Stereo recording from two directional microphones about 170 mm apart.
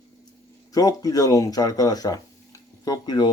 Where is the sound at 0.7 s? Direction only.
20° left (ahead or behind).